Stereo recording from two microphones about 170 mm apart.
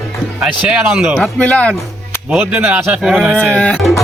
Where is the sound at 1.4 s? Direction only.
10° left (ahead or behind).